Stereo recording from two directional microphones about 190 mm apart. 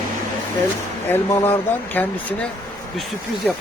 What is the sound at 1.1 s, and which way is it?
Speech, 10° left (ahead or behind).